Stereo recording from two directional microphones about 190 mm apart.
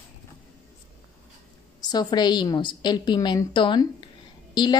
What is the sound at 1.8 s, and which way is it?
A woman's voice, 20° left (ahead or behind).